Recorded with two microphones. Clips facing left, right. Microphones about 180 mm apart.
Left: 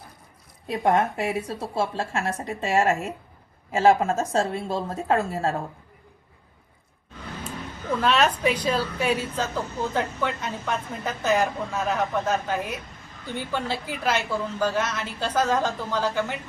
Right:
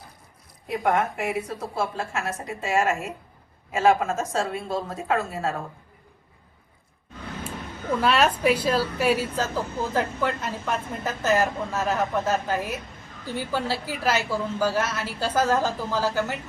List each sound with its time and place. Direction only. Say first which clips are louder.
0.7 s a woman's voice: left 2 dB; 30° left (ahead or behind)
7.4 s a woman's voice: even; 10° right (ahead or behind)